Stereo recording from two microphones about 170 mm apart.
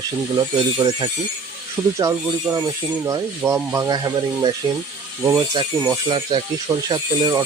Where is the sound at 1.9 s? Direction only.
20° right (ahead or behind).